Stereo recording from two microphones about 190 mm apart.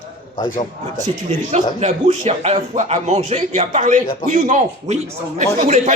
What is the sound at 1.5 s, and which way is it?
Speech, 35° right (ahead or behind).